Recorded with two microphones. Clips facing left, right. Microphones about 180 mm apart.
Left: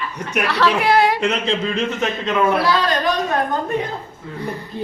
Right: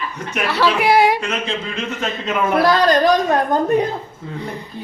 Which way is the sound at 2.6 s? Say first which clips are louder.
Right 5 dB; 40° right (ahead or behind).